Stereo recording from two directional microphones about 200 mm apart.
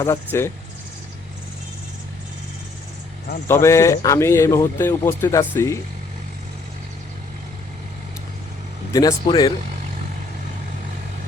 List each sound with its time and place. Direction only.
0.0 s speech: 15° left (ahead or behind)
3.5 s speech: 15° left (ahead or behind)
8.9 s speech: 15° left (ahead or behind)